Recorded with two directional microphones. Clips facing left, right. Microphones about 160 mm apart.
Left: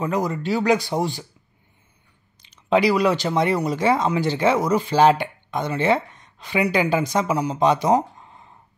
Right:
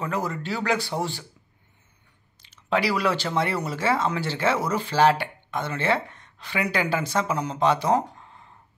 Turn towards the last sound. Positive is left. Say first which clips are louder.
# left 3 dB
turn(degrees=15)  # may be behind; listen again after turning